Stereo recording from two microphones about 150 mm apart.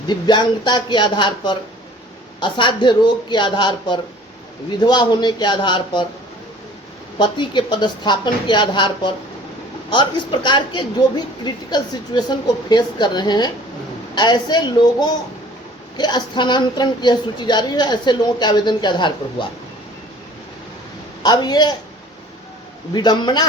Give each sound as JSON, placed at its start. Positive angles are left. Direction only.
{"t": 0.1, "sound": "a woman's voice", "side_deg": 30}
{"t": 7.2, "sound": "a woman's voice", "side_deg": 30}
{"t": 21.2, "sound": "a woman's voice", "side_deg": 30}
{"t": 23.0, "sound": "a woman's voice", "side_deg": 30}